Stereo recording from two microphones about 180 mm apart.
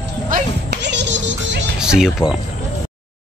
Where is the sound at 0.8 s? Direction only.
80° right.